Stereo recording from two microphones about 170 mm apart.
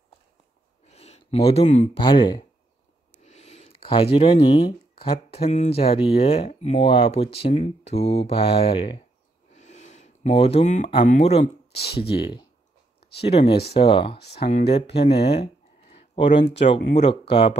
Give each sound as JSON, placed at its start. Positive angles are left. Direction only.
{"t": 0.9, "sound": "a sound", "side_deg": 40}
{"t": 2.0, "sound": "speech", "side_deg": 25}
{"t": 3.2, "sound": "speech", "side_deg": 45}
{"t": 9.5, "sound": "speech", "side_deg": 45}
{"t": 11.7, "sound": "speech", "side_deg": 70}
{"t": 13.2, "sound": "speech", "side_deg": 35}
{"t": 14.1, "sound": "speech", "side_deg": 70}
{"t": 14.7, "sound": "speech", "side_deg": 35}
{"t": 15.9, "sound": "a sound", "side_deg": 35}
{"t": 16.6, "sound": "speech", "side_deg": 40}